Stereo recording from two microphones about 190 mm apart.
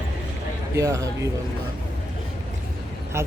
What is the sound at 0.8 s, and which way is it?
Speech, 15° right (ahead or behind).